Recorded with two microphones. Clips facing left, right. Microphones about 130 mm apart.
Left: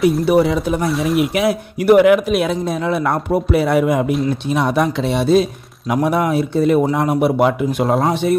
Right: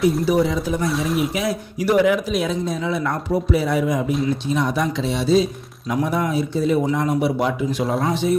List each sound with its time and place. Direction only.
0.3 s speech: 65° left (ahead or behind)
0.8 s speech: centre (ahead or behind)
1.3 s speech: 65° left (ahead or behind)